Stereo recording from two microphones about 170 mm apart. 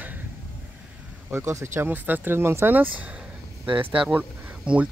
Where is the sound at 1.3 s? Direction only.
15° right (ahead or behind).